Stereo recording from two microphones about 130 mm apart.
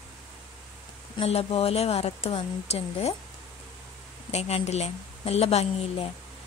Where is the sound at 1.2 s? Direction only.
50° left (ahead or behind).